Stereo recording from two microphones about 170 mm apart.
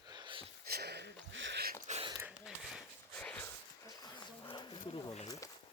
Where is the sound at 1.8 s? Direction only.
40° right (ahead or behind).